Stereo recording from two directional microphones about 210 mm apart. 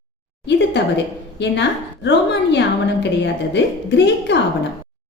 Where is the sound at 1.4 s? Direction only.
55° left (ahead or behind).